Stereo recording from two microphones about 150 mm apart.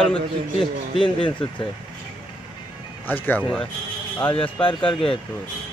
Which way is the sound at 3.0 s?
10° left (ahead or behind).